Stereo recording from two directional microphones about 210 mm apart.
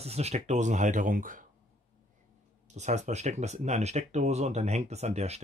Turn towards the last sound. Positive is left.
turn(degrees=-30)  # may be behind; listen again after turning